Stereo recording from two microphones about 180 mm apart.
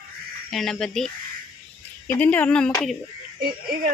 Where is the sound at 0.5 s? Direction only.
Centre (ahead or behind).